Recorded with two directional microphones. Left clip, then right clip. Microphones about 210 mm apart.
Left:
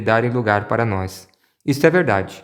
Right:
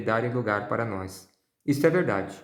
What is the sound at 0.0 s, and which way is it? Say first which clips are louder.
A man's voice: left 9 dB; 30° left (ahead or behind).